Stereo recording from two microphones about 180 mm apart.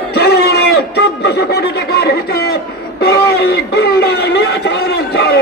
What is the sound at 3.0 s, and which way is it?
Speech, 60° left (ahead or behind).